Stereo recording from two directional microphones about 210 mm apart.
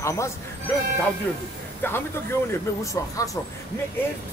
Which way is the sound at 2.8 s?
15° left (ahead or behind).